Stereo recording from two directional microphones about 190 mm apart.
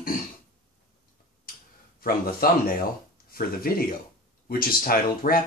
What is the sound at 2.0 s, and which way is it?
Speech, 50° left (ahead or behind).